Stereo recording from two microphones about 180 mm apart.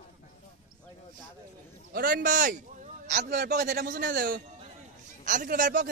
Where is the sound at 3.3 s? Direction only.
65° right (ahead or behind).